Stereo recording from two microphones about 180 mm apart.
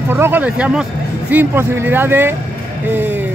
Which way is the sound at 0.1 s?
10° right (ahead or behind).